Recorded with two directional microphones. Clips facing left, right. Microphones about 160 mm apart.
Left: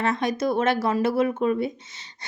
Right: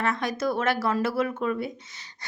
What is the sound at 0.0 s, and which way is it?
Speech, 20° left (ahead or behind).